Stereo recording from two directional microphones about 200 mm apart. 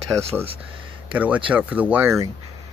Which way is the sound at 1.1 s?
10° right (ahead or behind).